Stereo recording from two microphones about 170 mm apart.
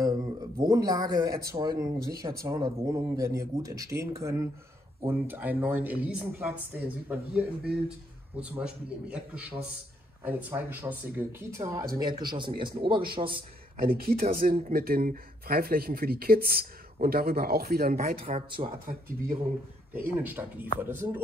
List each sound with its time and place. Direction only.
0.0 s speech: 20° right (ahead or behind)
13.8 s speech: 60° right (ahead or behind)
18.2 s speech: 35° right (ahead or behind)
18.9 s speech: 50° right (ahead or behind)
19.9 s speech: 10° right (ahead or behind)